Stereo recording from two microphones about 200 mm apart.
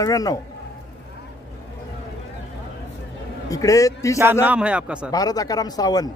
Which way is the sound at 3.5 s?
15° left (ahead or behind).